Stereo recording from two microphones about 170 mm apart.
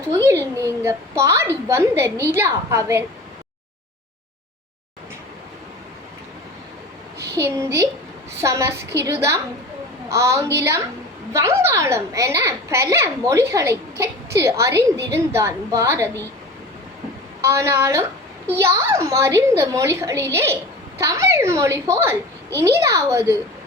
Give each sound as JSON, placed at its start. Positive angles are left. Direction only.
{"t": 0.2, "sound": "a child's voice", "side_deg": -15}
{"t": 7.3, "sound": "a child's voice", "side_deg": -15}
{"t": 17.4, "sound": "a child's voice", "side_deg": -15}